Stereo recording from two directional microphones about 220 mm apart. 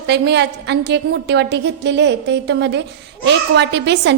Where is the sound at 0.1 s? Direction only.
50° right (ahead or behind).